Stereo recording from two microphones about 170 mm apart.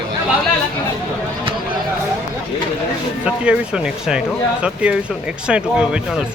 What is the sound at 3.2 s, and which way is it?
Speech, 5° right (ahead or behind).